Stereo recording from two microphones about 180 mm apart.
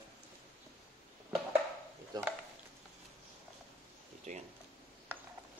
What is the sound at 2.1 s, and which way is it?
Speech, 20° right (ahead or behind).